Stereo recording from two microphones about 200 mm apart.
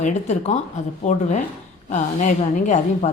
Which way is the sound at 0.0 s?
35° left (ahead or behind).